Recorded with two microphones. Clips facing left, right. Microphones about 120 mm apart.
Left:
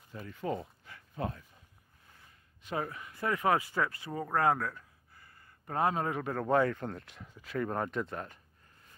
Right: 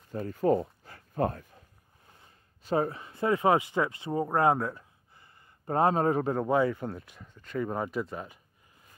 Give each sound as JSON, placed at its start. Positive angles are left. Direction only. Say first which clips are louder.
{"t": 0.1, "sound": "speech", "louder": "right 10 dB", "side_deg": -40}
{"t": 0.6, "sound": "a sound", "louder": "right 9 dB", "side_deg": -40}
{"t": 2.0, "sound": "speech", "louder": "right 2 dB", "side_deg": -30}
{"t": 6.5, "sound": "speech", "louder": "even", "side_deg": -5}